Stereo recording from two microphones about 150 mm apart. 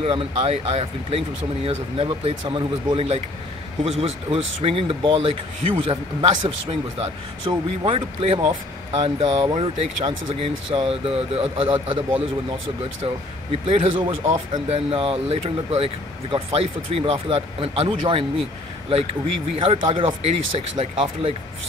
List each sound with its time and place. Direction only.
0.0 s speech: 40° right (ahead or behind)
13.0 s speech: 40° right (ahead or behind)